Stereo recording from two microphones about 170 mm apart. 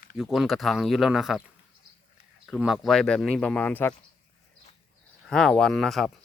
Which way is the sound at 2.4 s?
Centre (ahead or behind).